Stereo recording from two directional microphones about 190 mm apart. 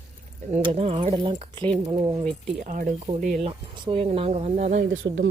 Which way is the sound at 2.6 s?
45° right (ahead or behind).